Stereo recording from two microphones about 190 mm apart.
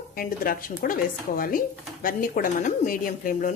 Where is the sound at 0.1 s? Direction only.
50° left (ahead or behind).